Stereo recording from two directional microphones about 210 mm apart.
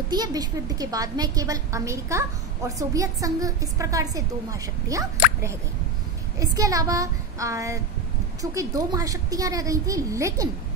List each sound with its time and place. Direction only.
0.1 s a woman's voice: 20° right (ahead or behind)
6.4 s a woman's voice: 15° right (ahead or behind)